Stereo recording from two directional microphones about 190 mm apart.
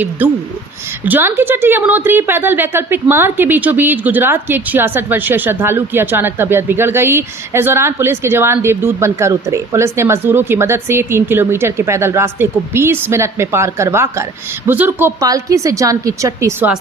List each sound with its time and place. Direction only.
0.2 s a woman's voice: 10° right (ahead or behind)